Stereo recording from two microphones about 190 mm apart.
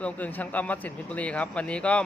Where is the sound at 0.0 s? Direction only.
10° left (ahead or behind).